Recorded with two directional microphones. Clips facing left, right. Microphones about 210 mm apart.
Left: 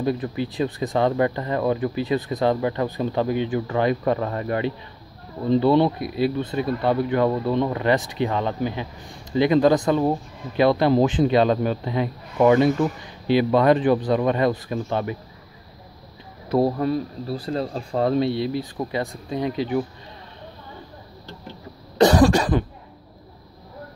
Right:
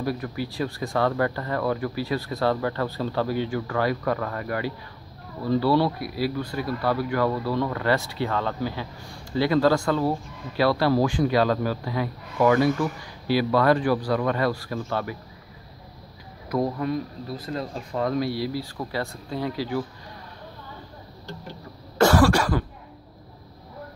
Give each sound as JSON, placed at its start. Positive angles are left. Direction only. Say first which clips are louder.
{"t": 0.0, "sound": "speech", "louder": "left 4 dB", "side_deg": 20}
{"t": 16.4, "sound": "speech", "louder": "left 5 dB", "side_deg": 30}
{"t": 21.9, "sound": "cough", "louder": "left 3 dB", "side_deg": 20}